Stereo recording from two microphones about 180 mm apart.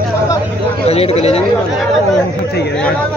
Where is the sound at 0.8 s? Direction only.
35° left (ahead or behind).